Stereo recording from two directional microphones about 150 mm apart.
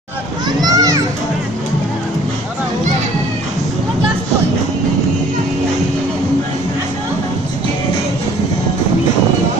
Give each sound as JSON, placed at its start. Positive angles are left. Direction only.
{"t": 0.5, "sound": "children playing", "side_deg": -25}